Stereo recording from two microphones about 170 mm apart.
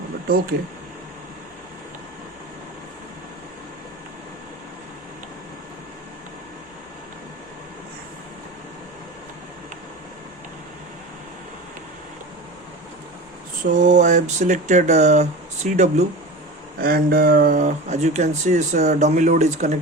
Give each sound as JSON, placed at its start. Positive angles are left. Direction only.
{"t": 13.7, "sound": "speech", "side_deg": -45}
{"t": 16.8, "sound": "speech", "side_deg": -60}